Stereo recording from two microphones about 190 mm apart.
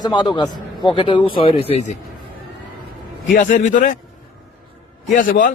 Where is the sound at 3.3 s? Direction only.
45° left (ahead or behind).